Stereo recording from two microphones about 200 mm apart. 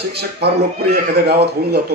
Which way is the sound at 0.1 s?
55° right (ahead or behind).